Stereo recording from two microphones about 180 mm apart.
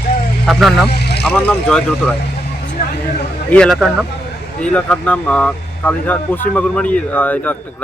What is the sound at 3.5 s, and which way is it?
Speech, 5° left (ahead or behind).